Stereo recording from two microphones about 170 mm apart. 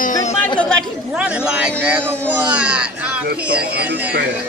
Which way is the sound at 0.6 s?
Centre (ahead or behind).